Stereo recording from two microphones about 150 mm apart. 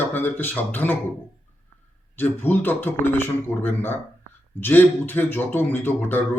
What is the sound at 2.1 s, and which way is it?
A man's voice, 15° left (ahead or behind).